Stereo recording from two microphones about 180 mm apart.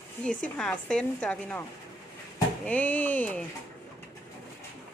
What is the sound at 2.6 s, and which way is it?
Speech, 10° left (ahead or behind).